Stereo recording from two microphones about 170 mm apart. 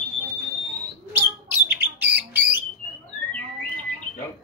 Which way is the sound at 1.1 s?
10° right (ahead or behind).